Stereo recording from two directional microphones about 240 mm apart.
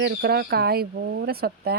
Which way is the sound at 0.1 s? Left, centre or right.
Right.